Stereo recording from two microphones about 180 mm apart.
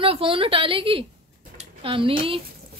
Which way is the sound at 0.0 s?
30° right (ahead or behind).